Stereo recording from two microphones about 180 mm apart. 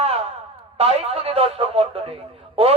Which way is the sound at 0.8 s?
35° right (ahead or behind).